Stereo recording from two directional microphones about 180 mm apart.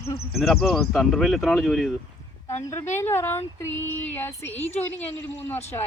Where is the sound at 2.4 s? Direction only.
15° left (ahead or behind).